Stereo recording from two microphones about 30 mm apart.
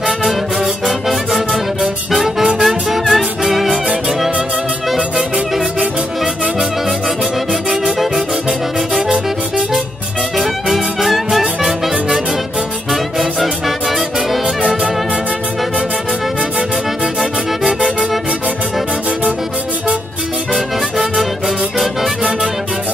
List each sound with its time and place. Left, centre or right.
0.8 s music: centre
8.0 s music: centre
10.3 s music: centre
17.2 s music: right